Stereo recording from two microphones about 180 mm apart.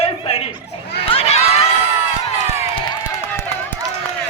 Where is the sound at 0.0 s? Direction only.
35° left (ahead or behind).